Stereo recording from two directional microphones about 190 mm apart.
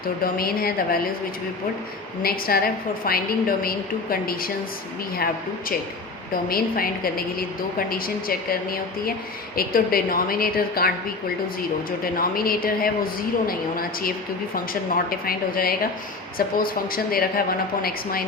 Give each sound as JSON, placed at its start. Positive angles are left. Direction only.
{"t": 0.3, "sound": "a woman's voice", "side_deg": 50}
{"t": 2.2, "sound": "a woman's voice", "side_deg": 50}